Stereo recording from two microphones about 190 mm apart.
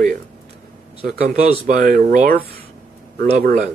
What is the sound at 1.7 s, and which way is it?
Speech, 50° right (ahead or behind).